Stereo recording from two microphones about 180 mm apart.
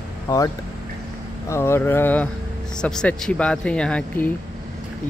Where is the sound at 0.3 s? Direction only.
20° left (ahead or behind).